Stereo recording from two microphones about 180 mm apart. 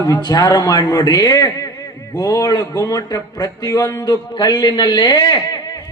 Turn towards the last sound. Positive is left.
turn(degrees=20)  # may be behind; listen again after turning